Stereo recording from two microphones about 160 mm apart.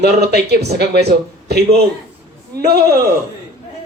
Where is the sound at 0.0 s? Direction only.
90° right.